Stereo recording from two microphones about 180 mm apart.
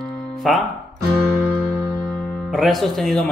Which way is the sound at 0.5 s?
Centre (ahead or behind).